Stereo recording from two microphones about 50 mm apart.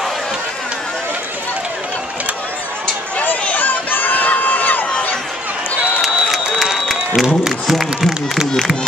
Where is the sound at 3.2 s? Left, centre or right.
Left.